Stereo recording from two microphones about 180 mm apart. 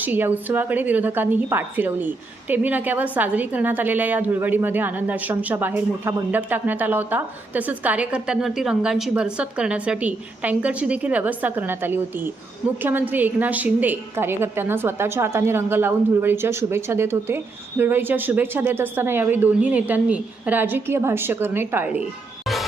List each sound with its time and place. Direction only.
0.0 s a woman's voice: 10° right (ahead or behind)